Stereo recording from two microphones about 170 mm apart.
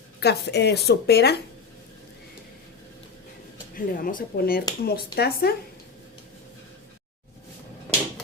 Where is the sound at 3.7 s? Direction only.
55° left (ahead or behind).